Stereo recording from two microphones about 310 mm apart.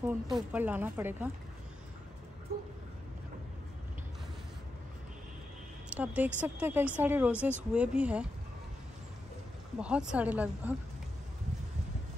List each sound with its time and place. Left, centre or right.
0.0 s a woman's voice: centre
2.5 s speech: right
5.9 s a woman's voice: centre
9.8 s a woman's voice: centre